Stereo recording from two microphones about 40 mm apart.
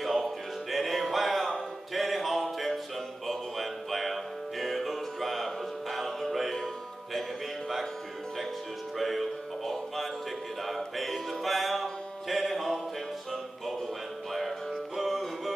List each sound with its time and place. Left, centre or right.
0.0 s music: centre
8.9 s music: centre
14.3 s music: centre